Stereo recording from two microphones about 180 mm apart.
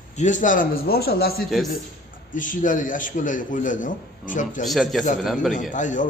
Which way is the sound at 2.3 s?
45° left (ahead or behind).